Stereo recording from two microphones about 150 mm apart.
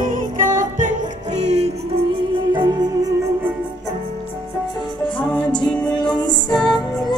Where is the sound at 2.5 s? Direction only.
30° right (ahead or behind).